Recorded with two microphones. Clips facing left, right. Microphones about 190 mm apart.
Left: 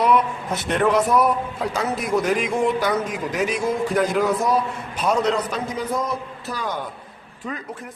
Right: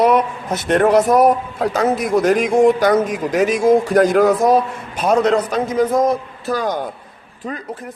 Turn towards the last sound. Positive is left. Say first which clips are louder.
# right 8 dB
turn(degrees=-45)  # may be behind; listen again after turning